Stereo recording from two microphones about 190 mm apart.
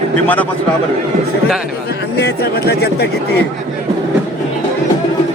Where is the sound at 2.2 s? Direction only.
60° left (ahead or behind).